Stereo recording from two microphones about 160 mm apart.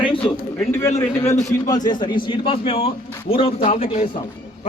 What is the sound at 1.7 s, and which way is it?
A man's voice, 25° left (ahead or behind).